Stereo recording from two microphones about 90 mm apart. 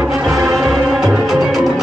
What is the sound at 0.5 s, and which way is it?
Music, 5° right (ahead or behind).